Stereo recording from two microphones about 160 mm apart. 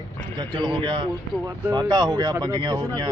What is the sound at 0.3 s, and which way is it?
Speech, 30° right (ahead or behind).